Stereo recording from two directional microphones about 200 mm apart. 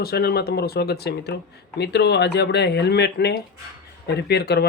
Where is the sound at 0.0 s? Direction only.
50° left (ahead or behind).